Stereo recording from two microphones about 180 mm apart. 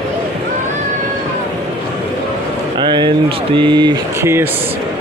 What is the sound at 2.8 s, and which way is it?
A man's voice, 25° right (ahead or behind).